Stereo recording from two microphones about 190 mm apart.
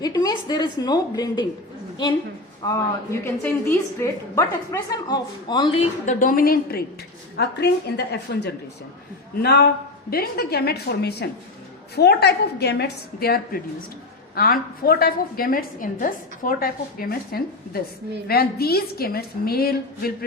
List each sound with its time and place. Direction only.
0.0 s a woman's voice: 20° left (ahead or behind)
2.6 s a woman's voice: 15° left (ahead or behind)
6.1 s a woman's voice: 45° left (ahead or behind)